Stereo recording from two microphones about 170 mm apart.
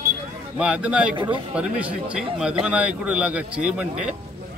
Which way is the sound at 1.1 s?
30° right (ahead or behind).